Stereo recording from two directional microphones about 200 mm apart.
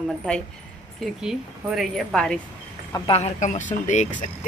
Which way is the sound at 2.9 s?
15° left (ahead or behind).